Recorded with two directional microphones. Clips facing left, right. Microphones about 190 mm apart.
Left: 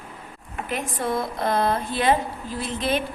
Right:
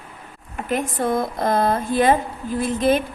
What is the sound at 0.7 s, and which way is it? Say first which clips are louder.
A woman's voice: right 5 dB; 50° right (ahead or behind).